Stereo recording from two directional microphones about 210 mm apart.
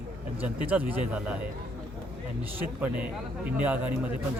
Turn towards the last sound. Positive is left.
turn(degrees=-5)  # may be behind; listen again after turning